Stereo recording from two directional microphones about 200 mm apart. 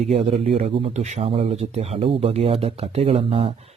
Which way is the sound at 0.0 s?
30° right (ahead or behind).